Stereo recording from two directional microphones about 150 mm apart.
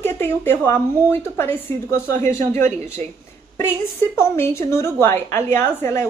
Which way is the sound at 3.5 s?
15° left (ahead or behind).